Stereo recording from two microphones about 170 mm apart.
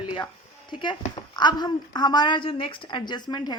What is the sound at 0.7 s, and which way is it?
A woman's voice, 30° left (ahead or behind).